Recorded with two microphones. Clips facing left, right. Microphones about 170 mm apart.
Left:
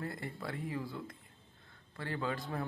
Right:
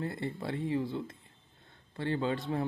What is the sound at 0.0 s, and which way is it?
Speech, 25° right (ahead or behind).